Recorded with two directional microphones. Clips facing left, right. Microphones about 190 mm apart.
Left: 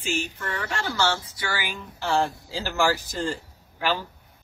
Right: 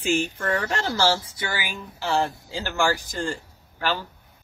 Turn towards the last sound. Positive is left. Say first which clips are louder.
# even
turn(degrees=10)  # may be behind; listen again after turning